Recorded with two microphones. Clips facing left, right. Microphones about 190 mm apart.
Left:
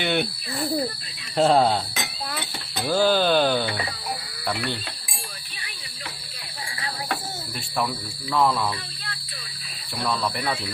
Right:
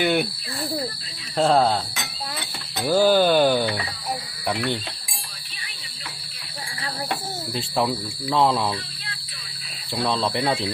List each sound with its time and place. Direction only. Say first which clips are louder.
0.0 s speech: right 3 dB; 5° right (ahead or behind)
1.4 s speech: even; centre (ahead or behind)
2.8 s speech: right 3 dB; 10° right (ahead or behind)
7.5 s speech: right 4 dB; 25° right (ahead or behind)
10.0 s speech: right 3 dB; 25° right (ahead or behind)